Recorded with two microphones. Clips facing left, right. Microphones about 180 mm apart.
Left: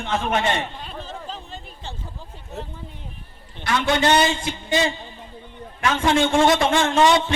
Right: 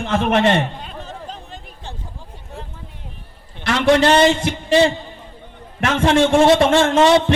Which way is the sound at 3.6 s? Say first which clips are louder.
Right 6 dB; 85° right.